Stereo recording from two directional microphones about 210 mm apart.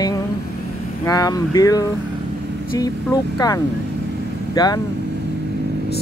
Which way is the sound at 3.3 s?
15° left (ahead or behind).